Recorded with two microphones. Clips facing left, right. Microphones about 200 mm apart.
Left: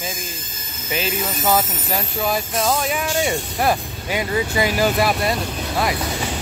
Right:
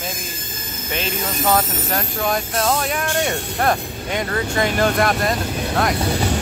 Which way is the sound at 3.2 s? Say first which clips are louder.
Even; 5° left (ahead or behind).